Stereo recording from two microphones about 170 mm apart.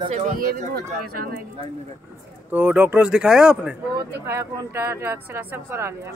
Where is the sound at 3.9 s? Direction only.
15° right (ahead or behind).